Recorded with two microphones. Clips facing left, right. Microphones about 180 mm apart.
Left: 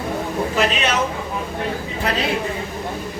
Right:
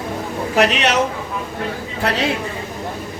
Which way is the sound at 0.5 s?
75° right (ahead or behind).